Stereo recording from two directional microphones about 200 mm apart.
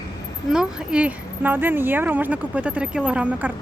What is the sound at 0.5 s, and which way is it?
Speech, 5° right (ahead or behind).